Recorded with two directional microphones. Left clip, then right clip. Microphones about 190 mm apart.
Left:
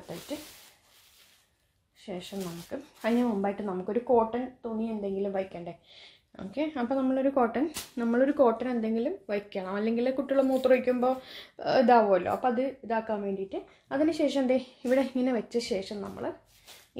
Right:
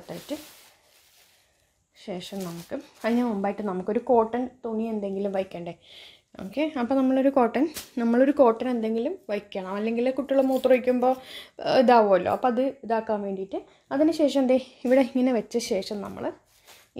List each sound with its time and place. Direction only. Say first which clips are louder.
2.0 s a woman's voice: right 3 dB; 45° right (ahead or behind)